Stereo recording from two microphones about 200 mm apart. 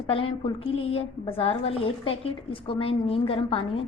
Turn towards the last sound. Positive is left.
turn(degrees=25)  # may be behind; listen again after turning